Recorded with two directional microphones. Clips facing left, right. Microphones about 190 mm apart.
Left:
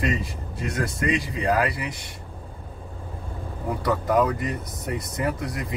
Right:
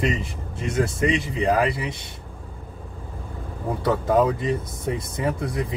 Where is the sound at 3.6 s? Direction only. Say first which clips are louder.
Right 2 dB; 25° right (ahead or behind).